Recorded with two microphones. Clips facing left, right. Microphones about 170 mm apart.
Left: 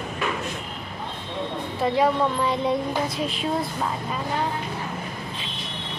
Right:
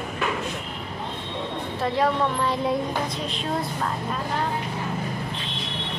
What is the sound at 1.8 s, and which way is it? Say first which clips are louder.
Speech: left 2 dB; centre (ahead or behind).